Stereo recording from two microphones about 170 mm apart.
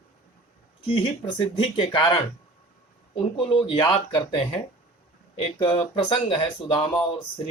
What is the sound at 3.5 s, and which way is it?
Speech, 30° left (ahead or behind).